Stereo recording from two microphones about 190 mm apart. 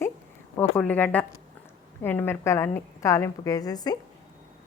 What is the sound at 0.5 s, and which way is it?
A woman's voice, 10° left (ahead or behind).